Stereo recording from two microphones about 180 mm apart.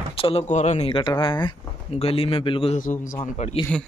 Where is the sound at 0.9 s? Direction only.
25° left (ahead or behind).